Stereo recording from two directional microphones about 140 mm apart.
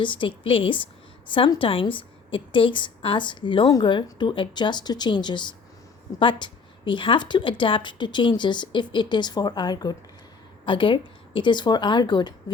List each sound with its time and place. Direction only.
0.0 s a woman's voice: 35° left (ahead or behind)